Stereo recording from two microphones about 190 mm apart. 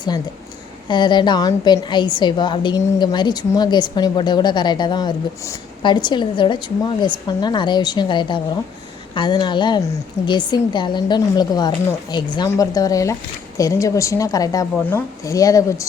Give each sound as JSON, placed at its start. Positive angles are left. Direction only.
{"t": 0.9, "sound": "a woman's voice", "side_deg": 25}